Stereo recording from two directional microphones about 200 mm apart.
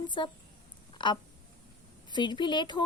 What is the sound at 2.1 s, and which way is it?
Speech, 20° left (ahead or behind).